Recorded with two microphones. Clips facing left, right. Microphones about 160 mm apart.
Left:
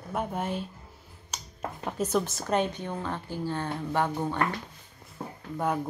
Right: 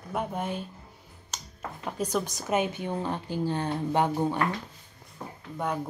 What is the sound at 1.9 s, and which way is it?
A woman's voice, centre (ahead or behind).